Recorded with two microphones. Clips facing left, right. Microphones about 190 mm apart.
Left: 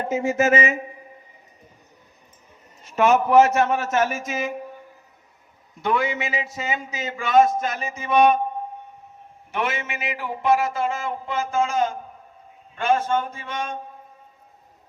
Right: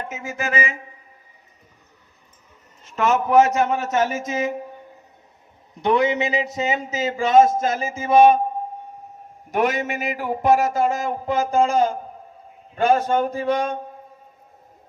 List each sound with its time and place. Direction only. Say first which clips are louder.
0.3 s speech: left 5 dB; 20° left (ahead or behind)
2.8 s a man's voice: left 2 dB; 15° left (ahead or behind)
3.5 s a man's voice: even; 20° right (ahead or behind)
5.8 s a man's voice: right 5 dB; 20° right (ahead or behind)
9.5 s a man's voice: right 6 dB; 40° right (ahead or behind)